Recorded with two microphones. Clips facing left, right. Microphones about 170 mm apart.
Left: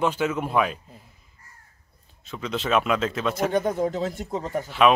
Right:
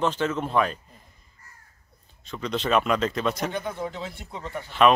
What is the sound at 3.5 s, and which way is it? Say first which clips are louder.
Speech: left 8 dB; 45° left (ahead or behind).